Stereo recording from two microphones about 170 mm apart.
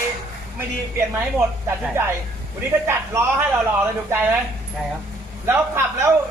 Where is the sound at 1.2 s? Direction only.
15° right (ahead or behind).